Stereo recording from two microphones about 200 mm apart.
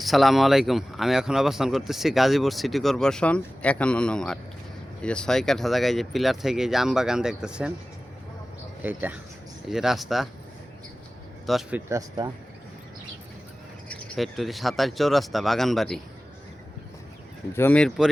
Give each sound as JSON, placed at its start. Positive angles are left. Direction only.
{"t": 0.0, "sound": "speech", "side_deg": 0}
{"t": 8.8, "sound": "speech", "side_deg": -10}
{"t": 11.4, "sound": "speech", "side_deg": 0}
{"t": 11.9, "sound": "speech", "side_deg": -20}
{"t": 13.8, "sound": "speech", "side_deg": 5}
{"t": 17.5, "sound": "speech", "side_deg": 10}